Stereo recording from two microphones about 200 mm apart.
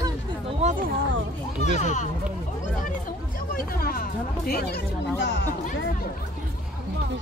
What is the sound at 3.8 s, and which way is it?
Speech, 45° left (ahead or behind).